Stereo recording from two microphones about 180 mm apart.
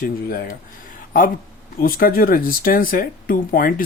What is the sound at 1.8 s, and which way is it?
Speech, 55° left (ahead or behind).